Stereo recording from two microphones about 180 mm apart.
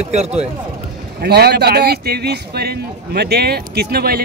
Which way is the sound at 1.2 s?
60° right (ahead or behind).